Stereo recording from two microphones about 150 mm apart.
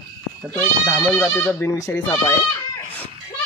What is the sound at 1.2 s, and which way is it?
Speech, 15° left (ahead or behind).